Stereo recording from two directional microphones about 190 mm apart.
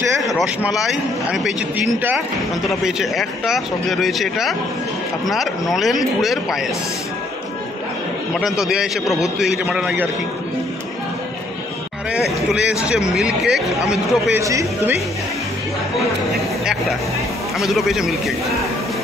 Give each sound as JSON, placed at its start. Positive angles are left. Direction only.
{"t": 0.7, "sound": "speech", "side_deg": 0}
{"t": 8.4, "sound": "speech", "side_deg": 0}
{"t": 12.1, "sound": "speech", "side_deg": -5}
{"t": 14.4, "sound": "speech", "side_deg": -15}
{"t": 17.6, "sound": "speech", "side_deg": 0}